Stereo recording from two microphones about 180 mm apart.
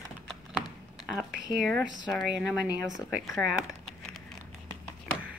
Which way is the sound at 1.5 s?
Centre (ahead or behind).